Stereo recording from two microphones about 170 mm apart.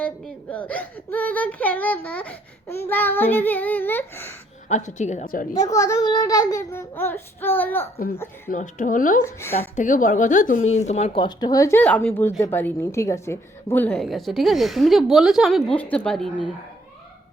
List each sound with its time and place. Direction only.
0.0 s speech: 10° left (ahead or behind)
4.7 s a woman's voice: 45° left (ahead or behind)
5.5 s speech: 20° left (ahead or behind)
7.9 s speech: 65° left (ahead or behind)
8.4 s a woman's voice: 50° left (ahead or behind)
9.2 s speech: 15° left (ahead or behind)
9.6 s a woman's voice: 50° left (ahead or behind); by 16.3 s 5° left (ahead or behind)